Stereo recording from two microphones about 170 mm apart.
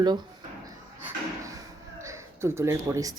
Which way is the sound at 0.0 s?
25° right (ahead or behind).